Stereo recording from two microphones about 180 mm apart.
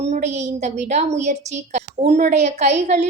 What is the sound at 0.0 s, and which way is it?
A woman's voice, 40° right (ahead or behind).